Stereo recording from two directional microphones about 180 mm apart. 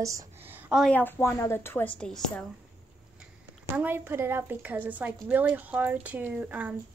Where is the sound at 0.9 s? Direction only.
10° left (ahead or behind).